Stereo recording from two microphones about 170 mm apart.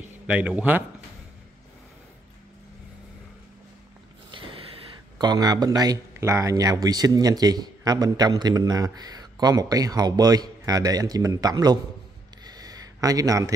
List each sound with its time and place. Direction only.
0.3 s a man's voice: 10° right (ahead or behind)
4.3 s speech: 30° right (ahead or behind)
12.4 s a sound: 20° right (ahead or behind)